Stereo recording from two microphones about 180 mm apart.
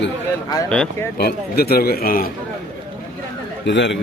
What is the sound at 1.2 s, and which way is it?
A man's voice, 60° left (ahead or behind).